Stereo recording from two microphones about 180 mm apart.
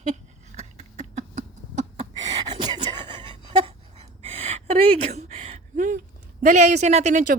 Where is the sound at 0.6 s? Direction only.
40° right (ahead or behind).